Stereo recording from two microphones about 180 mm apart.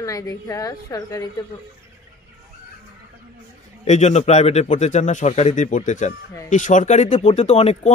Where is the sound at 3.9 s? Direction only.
40° left (ahead or behind).